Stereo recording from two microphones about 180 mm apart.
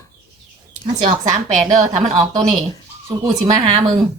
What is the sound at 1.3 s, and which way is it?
Speech, 40° right (ahead or behind).